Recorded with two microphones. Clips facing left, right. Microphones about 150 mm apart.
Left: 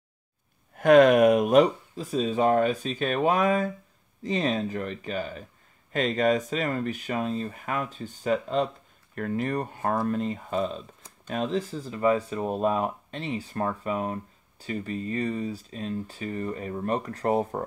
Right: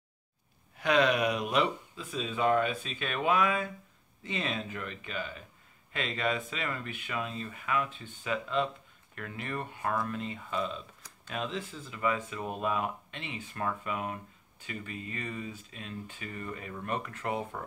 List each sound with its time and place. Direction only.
0.7 s speech: 50° left (ahead or behind)